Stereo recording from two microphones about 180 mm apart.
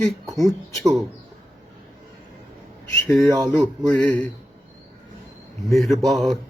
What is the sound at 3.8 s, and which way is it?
Speech, 5° left (ahead or behind).